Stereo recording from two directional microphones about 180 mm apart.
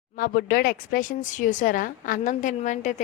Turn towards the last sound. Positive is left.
turn(degrees=45)  # may be behind; listen again after turning